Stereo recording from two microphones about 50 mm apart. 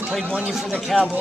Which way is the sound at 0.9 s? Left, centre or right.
Centre.